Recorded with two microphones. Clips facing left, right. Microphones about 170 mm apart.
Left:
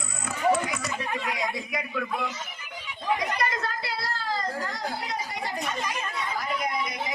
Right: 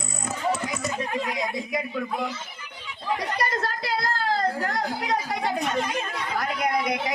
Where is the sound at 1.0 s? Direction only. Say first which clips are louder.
Right 3 dB; 40° right (ahead or behind).